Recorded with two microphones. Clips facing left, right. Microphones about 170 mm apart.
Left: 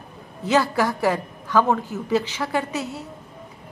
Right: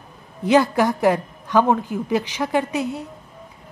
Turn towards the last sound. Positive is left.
turn(degrees=-15)  # may be behind; listen again after turning